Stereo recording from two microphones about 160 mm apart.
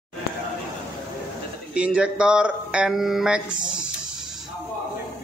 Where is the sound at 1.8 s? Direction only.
5° right (ahead or behind).